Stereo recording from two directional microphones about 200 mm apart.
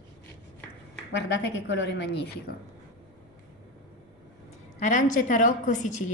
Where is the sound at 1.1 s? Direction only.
65° left (ahead or behind).